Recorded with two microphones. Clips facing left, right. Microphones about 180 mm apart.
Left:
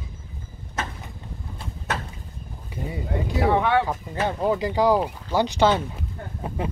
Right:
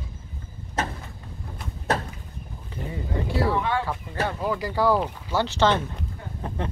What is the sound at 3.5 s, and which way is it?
Speech, 65° left (ahead or behind).